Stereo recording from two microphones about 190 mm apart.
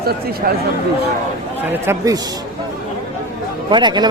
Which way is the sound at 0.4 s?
50° right (ahead or behind).